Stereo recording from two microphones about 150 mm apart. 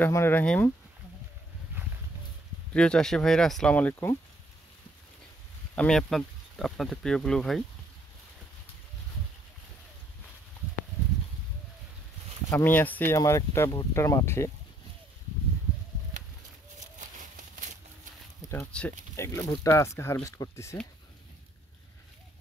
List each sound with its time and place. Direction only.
0.0 s speech: 15° left (ahead or behind)
2.7 s speech: 5° left (ahead or behind)
5.8 s speech: 5° left (ahead or behind)
12.4 s speech: 15° left (ahead or behind)
17.0 s a sound: 55° right (ahead or behind)
18.5 s speech: 10° left (ahead or behind)